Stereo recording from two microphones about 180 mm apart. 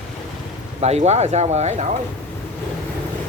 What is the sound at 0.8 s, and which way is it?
Speech, 35° right (ahead or behind).